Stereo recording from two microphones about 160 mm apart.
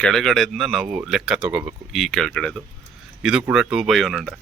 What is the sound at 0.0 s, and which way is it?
Speech, centre (ahead or behind).